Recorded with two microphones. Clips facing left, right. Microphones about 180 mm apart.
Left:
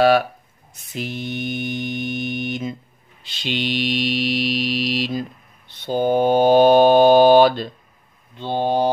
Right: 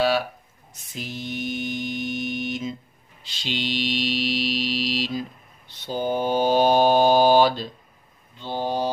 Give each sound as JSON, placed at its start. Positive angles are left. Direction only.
{"t": 0.9, "sound": "mantra", "side_deg": 65}